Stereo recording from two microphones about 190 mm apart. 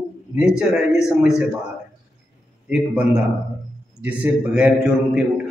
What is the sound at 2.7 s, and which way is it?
A man's voice, 5° right (ahead or behind).